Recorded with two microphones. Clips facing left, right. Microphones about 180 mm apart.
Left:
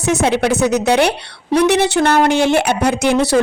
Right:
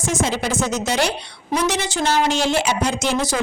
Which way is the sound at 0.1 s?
65° left (ahead or behind).